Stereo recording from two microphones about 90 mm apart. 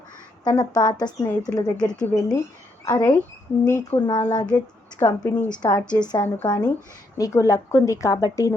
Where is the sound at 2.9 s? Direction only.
20° left (ahead or behind).